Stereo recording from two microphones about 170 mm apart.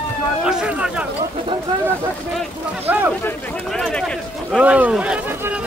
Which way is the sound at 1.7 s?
25° right (ahead or behind).